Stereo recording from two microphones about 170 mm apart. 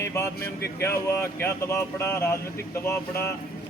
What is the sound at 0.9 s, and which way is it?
Speech, 15° left (ahead or behind).